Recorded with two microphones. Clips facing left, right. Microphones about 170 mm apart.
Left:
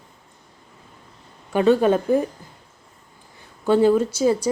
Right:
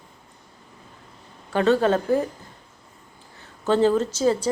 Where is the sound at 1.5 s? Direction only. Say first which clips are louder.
Left 2 dB; 15° left (ahead or behind).